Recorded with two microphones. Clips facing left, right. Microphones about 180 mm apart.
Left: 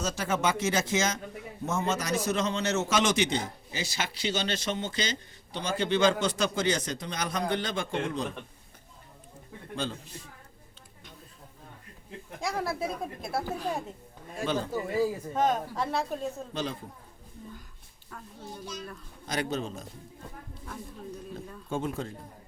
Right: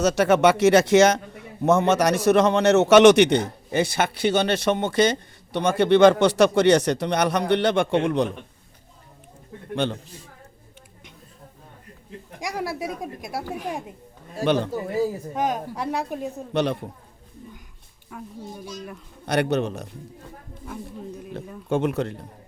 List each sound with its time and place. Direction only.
0.0 s a man's voice: 75° right (ahead or behind)
9.7 s a man's voice: 70° right (ahead or behind)
12.4 s speech: 15° right (ahead or behind)
14.4 s a man's voice: 70° right (ahead or behind)
15.3 s speech: 10° right (ahead or behind)
16.5 s a man's voice: 70° right (ahead or behind)
18.1 s speech: 15° right (ahead or behind)
19.2 s a man's voice: 65° right (ahead or behind)
21.7 s a man's voice: 75° right (ahead or behind)